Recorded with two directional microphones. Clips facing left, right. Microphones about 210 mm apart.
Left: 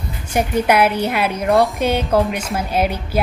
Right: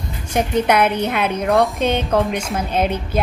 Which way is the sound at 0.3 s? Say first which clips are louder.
Even; 10° left (ahead or behind).